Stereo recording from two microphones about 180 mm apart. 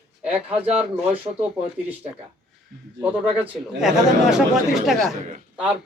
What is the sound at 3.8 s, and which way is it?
A man's voice, centre (ahead or behind).